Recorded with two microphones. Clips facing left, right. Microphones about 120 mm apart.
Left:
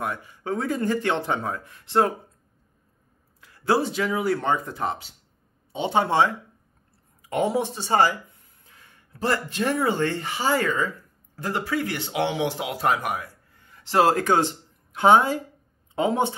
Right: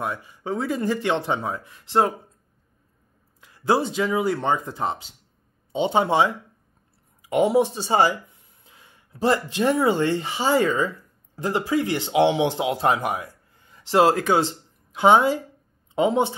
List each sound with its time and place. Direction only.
0.0 s speech: 20° right (ahead or behind)
3.3 s speech: 20° right (ahead or behind)